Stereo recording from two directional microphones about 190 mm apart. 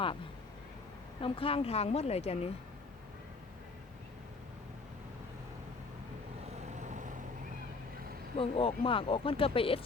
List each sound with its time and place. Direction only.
1.2 s a woman's voice: 30° left (ahead or behind)
6.7 s vehicle: 40° right (ahead or behind)
8.4 s speech: 30° left (ahead or behind)